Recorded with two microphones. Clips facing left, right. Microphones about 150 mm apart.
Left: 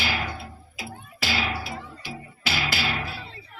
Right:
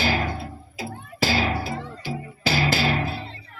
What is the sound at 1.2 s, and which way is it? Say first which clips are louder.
Music: right 6 dB; 40° right (ahead or behind).